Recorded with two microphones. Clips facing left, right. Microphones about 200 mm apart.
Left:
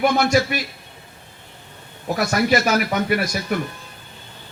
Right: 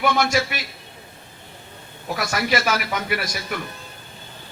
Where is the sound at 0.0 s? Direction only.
35° left (ahead or behind).